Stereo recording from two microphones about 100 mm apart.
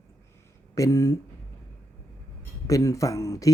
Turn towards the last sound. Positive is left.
turn(degrees=35)  # may be behind; listen again after turning